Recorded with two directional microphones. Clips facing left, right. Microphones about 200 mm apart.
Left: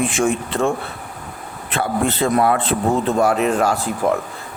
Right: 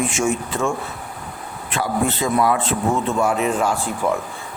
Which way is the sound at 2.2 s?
40° left (ahead or behind).